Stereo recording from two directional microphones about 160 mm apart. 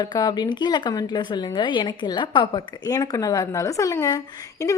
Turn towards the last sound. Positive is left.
turn(degrees=20)  # may be behind; listen again after turning